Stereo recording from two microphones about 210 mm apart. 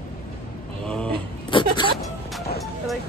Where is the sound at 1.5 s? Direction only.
25° left (ahead or behind).